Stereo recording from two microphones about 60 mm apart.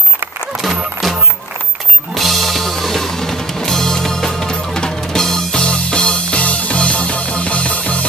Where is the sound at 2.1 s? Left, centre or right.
Centre.